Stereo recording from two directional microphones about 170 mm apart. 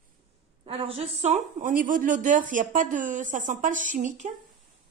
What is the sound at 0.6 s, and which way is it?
Speech, 35° right (ahead or behind).